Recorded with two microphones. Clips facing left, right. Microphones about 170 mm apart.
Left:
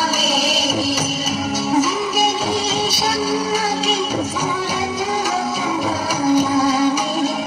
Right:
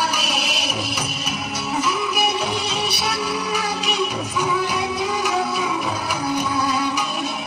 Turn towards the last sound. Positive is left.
turn(degrees=40)  # may be behind; listen again after turning